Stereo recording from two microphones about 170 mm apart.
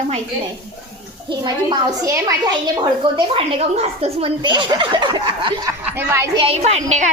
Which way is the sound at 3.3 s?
35° right (ahead or behind).